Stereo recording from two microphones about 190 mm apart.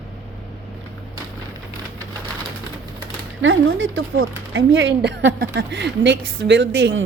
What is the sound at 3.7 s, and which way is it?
A woman's voice, 90° right.